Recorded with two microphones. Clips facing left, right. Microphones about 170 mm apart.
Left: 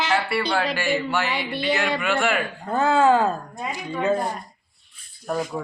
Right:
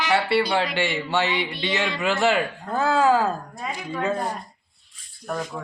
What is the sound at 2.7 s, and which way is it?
Speech, centre (ahead or behind).